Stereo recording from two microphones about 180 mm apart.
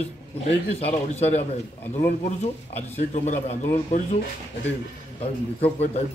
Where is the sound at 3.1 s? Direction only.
40° left (ahead or behind).